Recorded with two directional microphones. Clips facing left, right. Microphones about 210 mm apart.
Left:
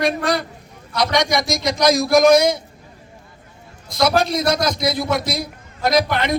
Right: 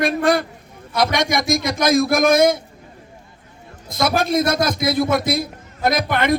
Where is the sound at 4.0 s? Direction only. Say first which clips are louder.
Even; 50° right (ahead or behind).